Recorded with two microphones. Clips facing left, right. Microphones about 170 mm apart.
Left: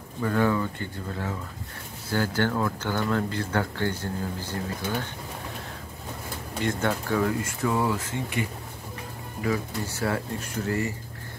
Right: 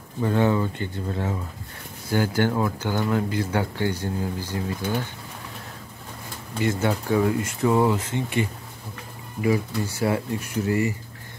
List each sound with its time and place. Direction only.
0.2 s speech: 25° right (ahead or behind)
6.6 s speech: 10° right (ahead or behind); by 8.5 s 25° right (ahead or behind)
9.4 s speech: 10° right (ahead or behind)